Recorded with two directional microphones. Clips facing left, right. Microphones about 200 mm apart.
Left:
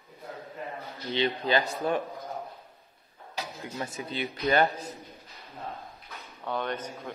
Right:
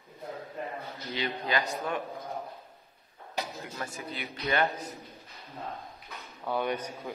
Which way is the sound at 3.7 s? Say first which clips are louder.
Left 5 dB; 20° left (ahead or behind).